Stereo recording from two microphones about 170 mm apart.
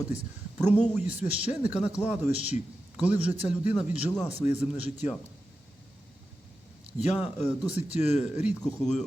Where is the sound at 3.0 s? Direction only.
10° right (ahead or behind).